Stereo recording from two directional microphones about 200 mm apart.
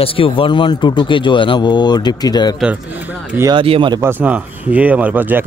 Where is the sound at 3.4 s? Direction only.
20° right (ahead or behind).